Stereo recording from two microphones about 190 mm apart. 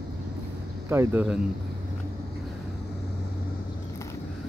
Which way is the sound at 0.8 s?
10° right (ahead or behind).